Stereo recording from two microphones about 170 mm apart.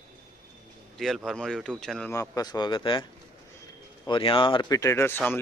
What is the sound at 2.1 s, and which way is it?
Speech, 20° left (ahead or behind).